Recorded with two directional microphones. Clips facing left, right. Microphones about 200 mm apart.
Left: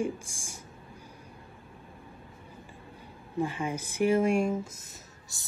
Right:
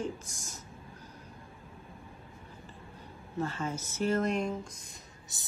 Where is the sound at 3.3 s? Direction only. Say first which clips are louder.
Left 3 dB; 15° left (ahead or behind).